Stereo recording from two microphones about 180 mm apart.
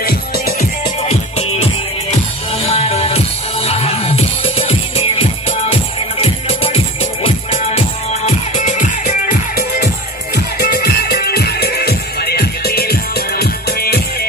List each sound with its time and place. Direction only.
0.0 s music: 55° left (ahead or behind)
1.0 s music: 35° left (ahead or behind); by 14.0 s 60° left (ahead or behind)